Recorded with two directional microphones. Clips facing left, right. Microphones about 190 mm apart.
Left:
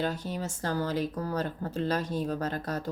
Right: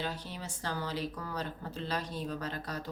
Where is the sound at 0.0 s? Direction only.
45° left (ahead or behind).